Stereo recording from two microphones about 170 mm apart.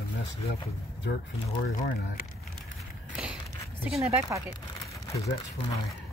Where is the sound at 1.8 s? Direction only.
55° left (ahead or behind).